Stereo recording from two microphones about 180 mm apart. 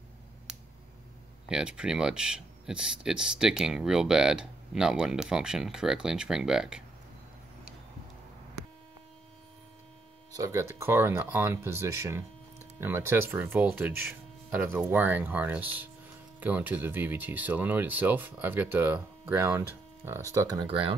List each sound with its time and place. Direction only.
1.5 s speech: 5° right (ahead or behind)
10.3 s speech: 15° right (ahead or behind)